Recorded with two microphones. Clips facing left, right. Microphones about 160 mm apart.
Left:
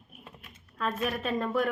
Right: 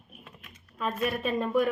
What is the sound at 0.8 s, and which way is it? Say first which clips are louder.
Speech: right 1 dB; 10° right (ahead or behind).